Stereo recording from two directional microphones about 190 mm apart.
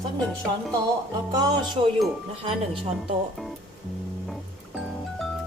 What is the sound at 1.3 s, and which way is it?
Speech, 20° right (ahead or behind).